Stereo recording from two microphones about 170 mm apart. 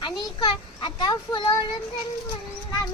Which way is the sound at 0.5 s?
25° left (ahead or behind).